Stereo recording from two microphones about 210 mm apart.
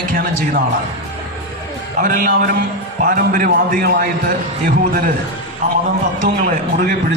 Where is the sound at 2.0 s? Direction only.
45° right (ahead or behind).